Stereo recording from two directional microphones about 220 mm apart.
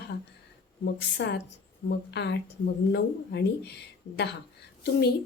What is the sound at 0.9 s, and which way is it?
Speech, 50° left (ahead or behind).